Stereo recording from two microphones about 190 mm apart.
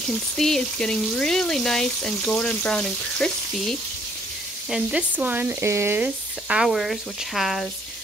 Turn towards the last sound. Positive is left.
turn(degrees=0)  # may be behind; listen again after turning